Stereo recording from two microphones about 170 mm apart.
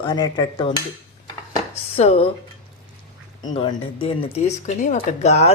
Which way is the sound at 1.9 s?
35° left (ahead or behind).